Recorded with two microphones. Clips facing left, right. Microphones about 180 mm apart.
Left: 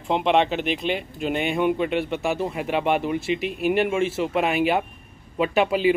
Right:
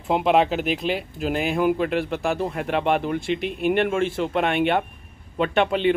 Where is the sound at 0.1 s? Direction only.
5° right (ahead or behind).